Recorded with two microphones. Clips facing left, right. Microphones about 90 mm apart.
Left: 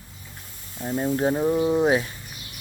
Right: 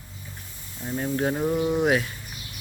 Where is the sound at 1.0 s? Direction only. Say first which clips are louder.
Left 3 dB; 20° left (ahead or behind).